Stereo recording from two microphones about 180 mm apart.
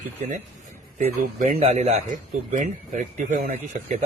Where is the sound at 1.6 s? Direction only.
35° right (ahead or behind).